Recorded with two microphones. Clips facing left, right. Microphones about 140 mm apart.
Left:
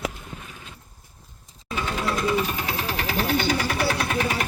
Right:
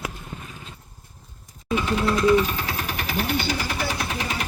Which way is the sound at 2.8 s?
30° left (ahead or behind).